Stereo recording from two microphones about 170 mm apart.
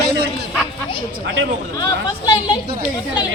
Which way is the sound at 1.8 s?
20° left (ahead or behind).